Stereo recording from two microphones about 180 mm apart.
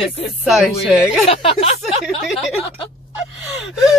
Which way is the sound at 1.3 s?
35° left (ahead or behind).